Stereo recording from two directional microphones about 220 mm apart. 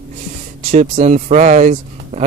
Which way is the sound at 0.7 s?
35° right (ahead or behind).